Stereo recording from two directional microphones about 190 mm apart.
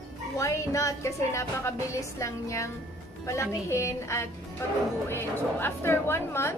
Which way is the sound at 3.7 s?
15° left (ahead or behind).